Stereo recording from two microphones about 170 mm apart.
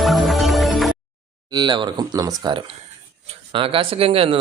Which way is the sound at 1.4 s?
25° right (ahead or behind).